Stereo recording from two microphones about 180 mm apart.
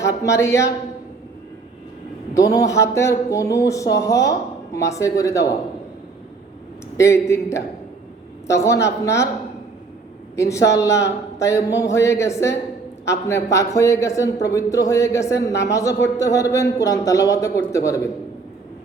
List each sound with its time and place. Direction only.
0.0 s speech: 15° left (ahead or behind)
2.3 s speech: 20° left (ahead or behind)
6.9 s speech: 15° left (ahead or behind)
10.3 s speech: 15° left (ahead or behind)